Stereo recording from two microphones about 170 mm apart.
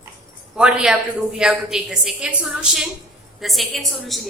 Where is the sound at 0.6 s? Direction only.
5° right (ahead or behind).